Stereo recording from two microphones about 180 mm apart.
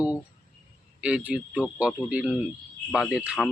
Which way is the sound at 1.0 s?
5° right (ahead or behind).